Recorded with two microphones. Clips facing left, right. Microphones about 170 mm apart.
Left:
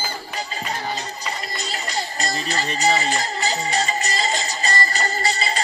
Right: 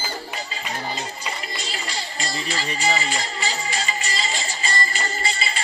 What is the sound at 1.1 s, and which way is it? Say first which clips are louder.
Music: left 2 dB; 40° left (ahead or behind).